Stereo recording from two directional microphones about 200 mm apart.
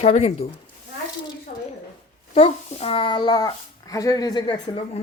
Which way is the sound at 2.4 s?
30° left (ahead or behind).